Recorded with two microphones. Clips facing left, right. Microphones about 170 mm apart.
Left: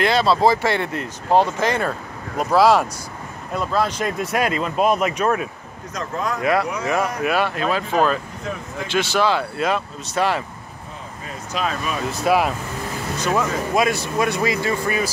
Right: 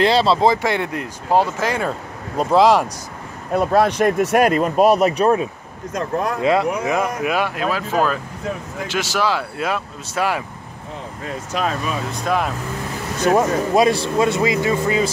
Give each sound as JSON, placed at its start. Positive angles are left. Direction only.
{"t": 0.0, "sound": "speech", "side_deg": -30}
{"t": 2.3, "sound": "speech", "side_deg": -20}
{"t": 3.5, "sound": "speech", "side_deg": -60}
{"t": 5.9, "sound": "speech", "side_deg": -60}
{"t": 6.4, "sound": "speech", "side_deg": -25}
{"t": 11.5, "sound": "speech", "side_deg": -55}
{"t": 12.1, "sound": "speech", "side_deg": 5}
{"t": 13.3, "sound": "speech", "side_deg": -35}